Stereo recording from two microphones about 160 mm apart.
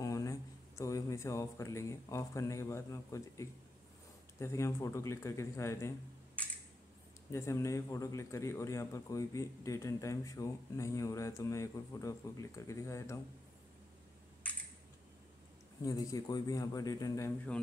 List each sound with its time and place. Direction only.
0.0 s a man's voice: 20° left (ahead or behind)
15.8 s a man's voice: 20° left (ahead or behind)